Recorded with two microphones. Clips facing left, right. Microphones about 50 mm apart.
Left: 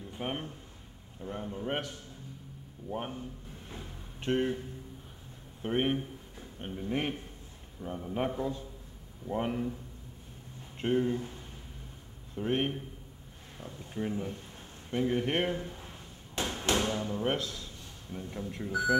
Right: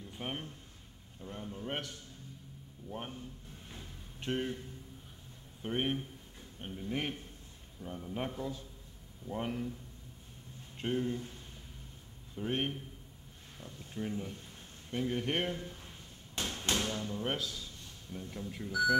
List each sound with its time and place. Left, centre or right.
0.1 s a man's voice: centre
5.6 s a man's voice: centre
9.3 s a man's voice: centre
10.8 s a man's voice: centre
12.4 s a man's voice: centre
13.6 s a man's voice: left
15.5 s speech: left
16.3 s thump: centre
16.6 s a man's voice: left
18.7 s speech: left